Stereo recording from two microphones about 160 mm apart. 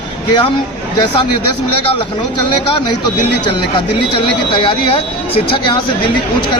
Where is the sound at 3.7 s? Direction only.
30° left (ahead or behind).